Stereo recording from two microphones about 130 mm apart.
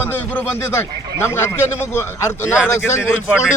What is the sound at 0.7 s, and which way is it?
Speech, 20° left (ahead or behind).